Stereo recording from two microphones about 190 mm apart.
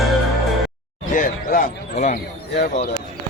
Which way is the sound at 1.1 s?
45° left (ahead or behind).